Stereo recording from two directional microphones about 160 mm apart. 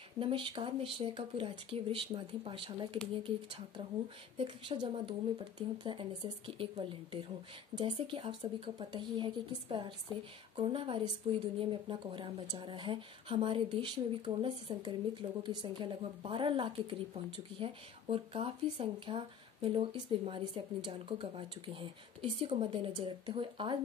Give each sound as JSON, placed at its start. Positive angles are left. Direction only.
{"t": 0.2, "sound": "speech", "side_deg": -30}